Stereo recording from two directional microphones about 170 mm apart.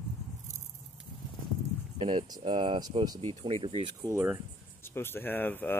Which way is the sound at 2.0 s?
25° right (ahead or behind).